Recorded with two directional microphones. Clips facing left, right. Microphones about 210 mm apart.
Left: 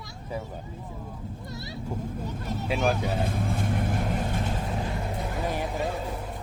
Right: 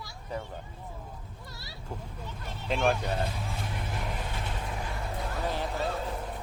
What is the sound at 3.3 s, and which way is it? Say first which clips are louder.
Vehicle: left 8 dB; 50° left (ahead or behind).